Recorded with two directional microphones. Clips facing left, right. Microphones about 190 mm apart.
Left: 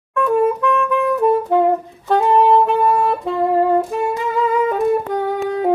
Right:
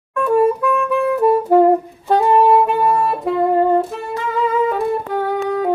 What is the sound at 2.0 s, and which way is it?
Saxophone, 15° right (ahead or behind).